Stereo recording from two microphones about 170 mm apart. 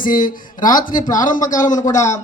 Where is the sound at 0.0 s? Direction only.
55° left (ahead or behind).